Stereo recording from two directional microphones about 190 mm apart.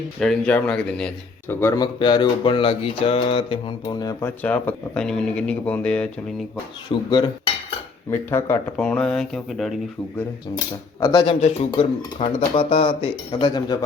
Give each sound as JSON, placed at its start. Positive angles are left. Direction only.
{"t": 0.2, "sound": "speech", "side_deg": 5}
{"t": 4.2, "sound": "speech", "side_deg": 10}
{"t": 6.8, "sound": "speech", "side_deg": 25}
{"t": 11.0, "sound": "speech", "side_deg": 20}
{"t": 11.3, "sound": "speech", "side_deg": 30}